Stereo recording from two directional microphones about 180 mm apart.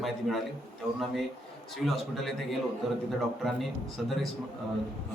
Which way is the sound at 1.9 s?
Centre (ahead or behind).